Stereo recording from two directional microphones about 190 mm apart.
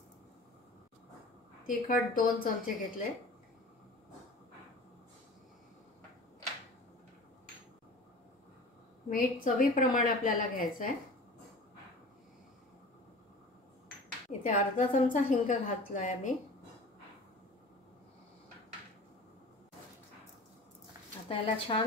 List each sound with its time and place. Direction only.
1.7 s a woman's voice: 45° left (ahead or behind)
9.1 s a woman's voice: 45° left (ahead or behind)
14.4 s a woman's voice: 40° left (ahead or behind)
21.3 s a woman's voice: 30° left (ahead or behind)